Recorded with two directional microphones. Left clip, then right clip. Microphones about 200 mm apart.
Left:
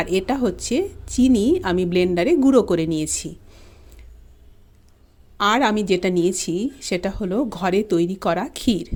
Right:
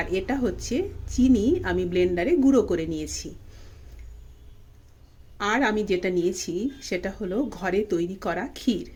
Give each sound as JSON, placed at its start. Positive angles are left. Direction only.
{"t": 0.0, "sound": "speech", "side_deg": 40}
{"t": 5.4, "sound": "speech", "side_deg": 40}